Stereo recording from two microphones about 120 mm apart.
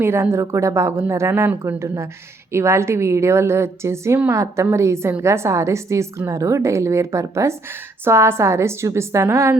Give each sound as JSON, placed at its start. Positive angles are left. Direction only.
{"t": 0.0, "sound": "a woman's voice", "side_deg": -20}